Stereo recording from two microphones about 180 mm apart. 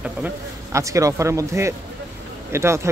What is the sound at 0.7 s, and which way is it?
Speech, 15° right (ahead or behind).